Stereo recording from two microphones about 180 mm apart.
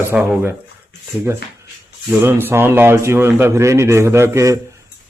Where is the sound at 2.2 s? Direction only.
10° right (ahead or behind).